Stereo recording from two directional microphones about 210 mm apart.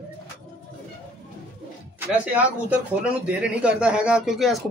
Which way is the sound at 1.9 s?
5° right (ahead or behind).